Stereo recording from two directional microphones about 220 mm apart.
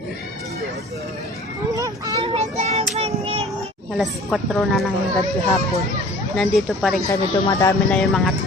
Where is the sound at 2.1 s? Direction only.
25° right (ahead or behind).